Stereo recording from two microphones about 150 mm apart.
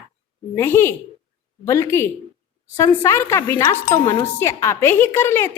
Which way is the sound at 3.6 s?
25° left (ahead or behind).